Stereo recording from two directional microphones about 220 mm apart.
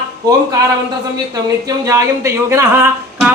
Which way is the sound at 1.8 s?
15° right (ahead or behind).